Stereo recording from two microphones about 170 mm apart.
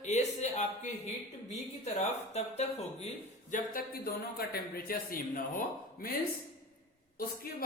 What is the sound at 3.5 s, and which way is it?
A man's voice, 55° left (ahead or behind).